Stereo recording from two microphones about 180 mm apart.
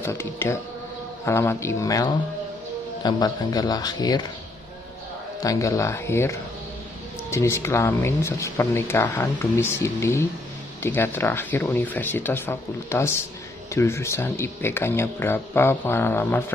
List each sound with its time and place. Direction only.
0.0 s speech: 15° left (ahead or behind)
5.4 s speech: 20° left (ahead or behind)